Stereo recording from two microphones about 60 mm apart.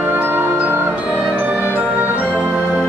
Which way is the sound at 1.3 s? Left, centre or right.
Right.